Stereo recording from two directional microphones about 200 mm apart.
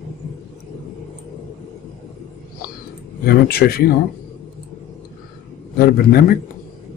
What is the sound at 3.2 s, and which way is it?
Speech, 50° left (ahead or behind).